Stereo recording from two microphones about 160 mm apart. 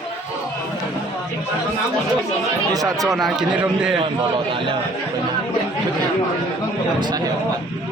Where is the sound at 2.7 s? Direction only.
20° right (ahead or behind).